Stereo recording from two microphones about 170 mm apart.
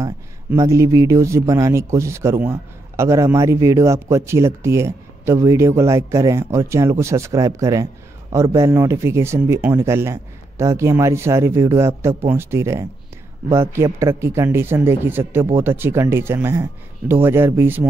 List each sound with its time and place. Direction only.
0.6 s speech: 20° right (ahead or behind)